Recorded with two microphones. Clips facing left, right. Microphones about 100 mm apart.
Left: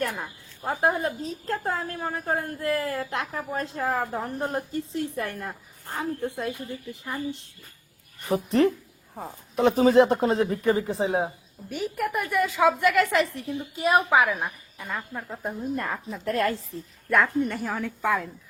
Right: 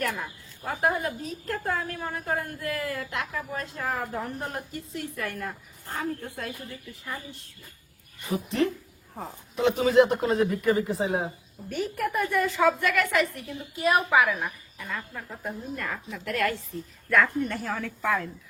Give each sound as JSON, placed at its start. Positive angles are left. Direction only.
{"t": 0.0, "sound": "a woman's voice", "side_deg": 25}
{"t": 8.3, "sound": "a woman's voice", "side_deg": 45}
{"t": 11.7, "sound": "a woman's voice", "side_deg": 5}
{"t": 17.1, "sound": "a woman's voice", "side_deg": 20}